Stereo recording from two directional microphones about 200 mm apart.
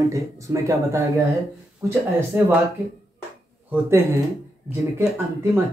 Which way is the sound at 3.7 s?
10° right (ahead or behind).